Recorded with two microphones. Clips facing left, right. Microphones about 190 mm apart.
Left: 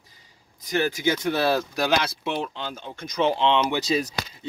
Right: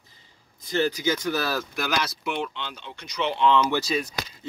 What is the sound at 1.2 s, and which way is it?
Speech, 25° left (ahead or behind).